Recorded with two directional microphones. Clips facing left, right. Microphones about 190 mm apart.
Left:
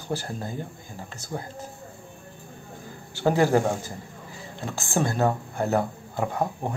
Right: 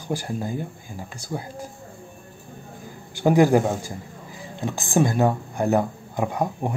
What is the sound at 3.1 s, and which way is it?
A man's voice, 15° right (ahead or behind).